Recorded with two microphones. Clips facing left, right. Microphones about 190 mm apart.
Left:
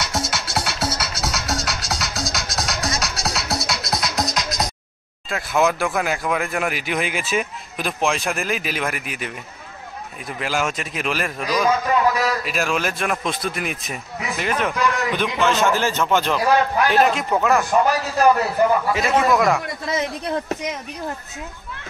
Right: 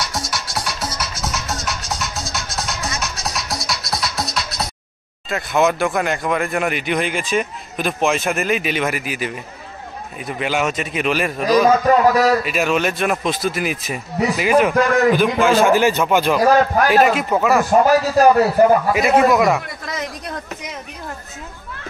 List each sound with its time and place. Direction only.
0.0 s music: 25° left (ahead or behind)
0.6 s music: 70° left (ahead or behind)
3.4 s music: 25° left (ahead or behind)
5.3 s speech: centre (ahead or behind)
11.6 s a man's voice: 40° right (ahead or behind)
12.4 s a man's voice: centre (ahead or behind)
16.3 s speech: 45° right (ahead or behind)
16.9 s speech: 5° right (ahead or behind)
17.6 s a man's voice: 40° right (ahead or behind)
19.3 s speech: 5° right (ahead or behind)
19.9 s speech: 25° left (ahead or behind)